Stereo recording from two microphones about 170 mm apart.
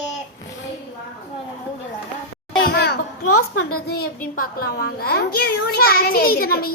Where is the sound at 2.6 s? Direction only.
70° left (ahead or behind).